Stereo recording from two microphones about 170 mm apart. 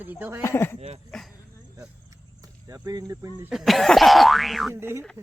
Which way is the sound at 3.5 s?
Centre (ahead or behind).